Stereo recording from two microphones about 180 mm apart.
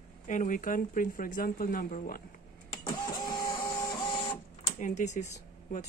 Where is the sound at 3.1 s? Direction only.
25° left (ahead or behind).